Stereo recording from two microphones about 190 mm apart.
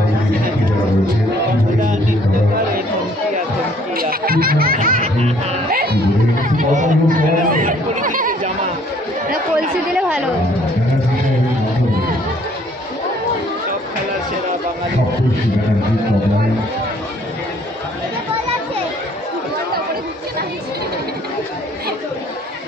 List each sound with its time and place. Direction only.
3.9 s music: 50° right (ahead or behind)
6.5 s chatter: 45° right (ahead or behind)
9.9 s music: 5° right (ahead or behind)